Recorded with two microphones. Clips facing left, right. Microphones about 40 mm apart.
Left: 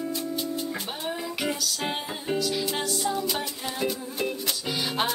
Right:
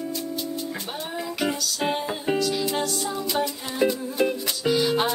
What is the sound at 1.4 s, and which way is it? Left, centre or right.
Music, centre.